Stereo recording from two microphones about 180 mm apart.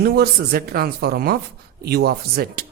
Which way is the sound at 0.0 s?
55° right (ahead or behind).